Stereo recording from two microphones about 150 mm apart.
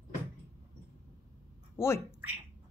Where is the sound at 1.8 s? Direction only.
15° left (ahead or behind).